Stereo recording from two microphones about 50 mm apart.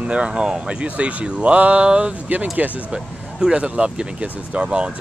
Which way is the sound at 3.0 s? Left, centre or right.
Centre.